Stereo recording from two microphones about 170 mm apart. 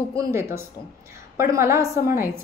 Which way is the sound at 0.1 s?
15° right (ahead or behind).